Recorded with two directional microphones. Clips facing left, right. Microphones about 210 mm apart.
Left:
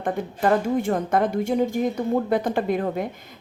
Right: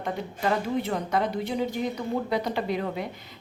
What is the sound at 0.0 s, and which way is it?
Speech, 50° left (ahead or behind).